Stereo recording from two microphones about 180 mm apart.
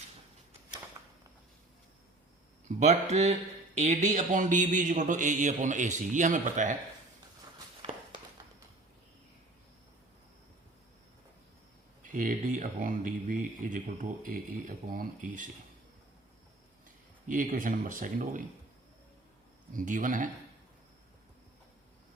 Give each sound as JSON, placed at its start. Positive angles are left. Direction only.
{"t": 2.6, "sound": "speech", "side_deg": -40}
{"t": 7.8, "sound": "walk", "side_deg": -35}
{"t": 12.0, "sound": "speech", "side_deg": -45}
{"t": 17.2, "sound": "speech", "side_deg": -45}
{"t": 19.7, "sound": "speech", "side_deg": -45}